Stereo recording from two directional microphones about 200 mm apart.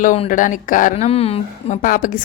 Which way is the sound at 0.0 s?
40° left (ahead or behind).